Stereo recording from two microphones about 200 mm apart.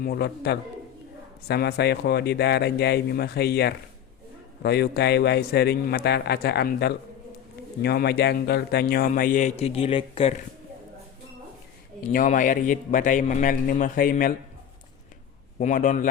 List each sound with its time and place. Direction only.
0.0 s a man's voice: 50° left (ahead or behind); by 10.3 s 30° left (ahead or behind)
12.1 s a man's voice: 40° left (ahead or behind)
15.5 s a man's voice: 40° left (ahead or behind)